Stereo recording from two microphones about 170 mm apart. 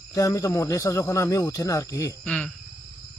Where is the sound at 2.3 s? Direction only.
5° left (ahead or behind).